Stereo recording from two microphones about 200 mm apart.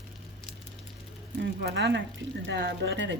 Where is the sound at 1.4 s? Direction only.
55° right (ahead or behind).